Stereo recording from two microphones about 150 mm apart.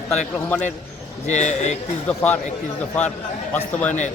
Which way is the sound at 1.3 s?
50° left (ahead or behind).